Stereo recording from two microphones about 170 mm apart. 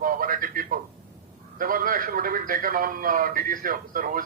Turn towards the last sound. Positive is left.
turn(degrees=-55)  # may be behind; listen again after turning